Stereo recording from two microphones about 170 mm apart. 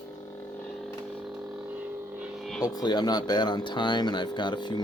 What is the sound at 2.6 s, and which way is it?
Speech, 20° left (ahead or behind).